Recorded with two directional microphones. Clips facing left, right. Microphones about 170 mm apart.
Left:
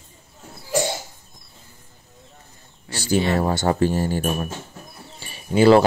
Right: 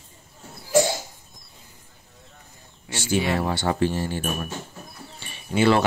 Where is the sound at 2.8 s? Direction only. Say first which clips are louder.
Left 3 dB; 35° left (ahead or behind).